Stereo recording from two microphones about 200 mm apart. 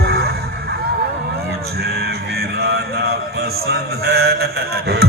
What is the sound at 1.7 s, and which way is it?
Music, 50° right (ahead or behind).